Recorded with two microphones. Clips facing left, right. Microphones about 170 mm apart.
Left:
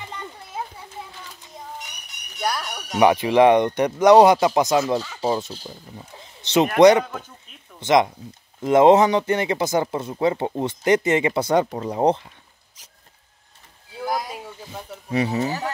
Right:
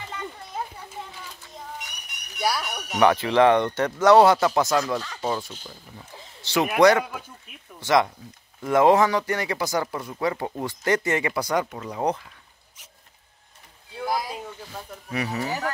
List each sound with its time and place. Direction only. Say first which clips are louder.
2.4 s speech: even; 5° right (ahead or behind)
3.0 s speech: left 3 dB; 15° left (ahead or behind)
7.1 s speech: left 3 dB; 10° right (ahead or behind)
7.8 s speech: left 3 dB; 20° left (ahead or behind)
13.9 s a sound: left 1 dB; centre (ahead or behind)
15.0 s speech: left 6 dB; 25° left (ahead or behind)